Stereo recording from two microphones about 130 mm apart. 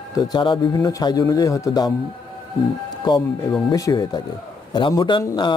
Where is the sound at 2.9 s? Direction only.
35° left (ahead or behind).